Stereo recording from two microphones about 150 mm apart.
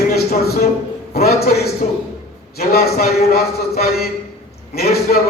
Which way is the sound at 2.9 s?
90° left.